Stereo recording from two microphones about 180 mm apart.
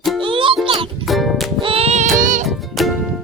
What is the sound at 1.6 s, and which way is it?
Music, 35° right (ahead or behind).